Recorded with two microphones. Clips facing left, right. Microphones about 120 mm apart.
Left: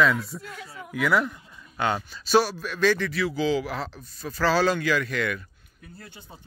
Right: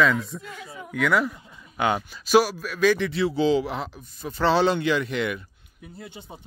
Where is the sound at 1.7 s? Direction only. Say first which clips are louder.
Right 2 dB; 15° right (ahead or behind).